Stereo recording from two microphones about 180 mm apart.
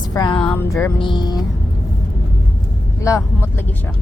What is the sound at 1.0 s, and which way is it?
Speech, 25° left (ahead or behind).